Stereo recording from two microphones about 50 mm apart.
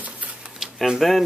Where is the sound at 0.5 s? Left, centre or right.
Centre.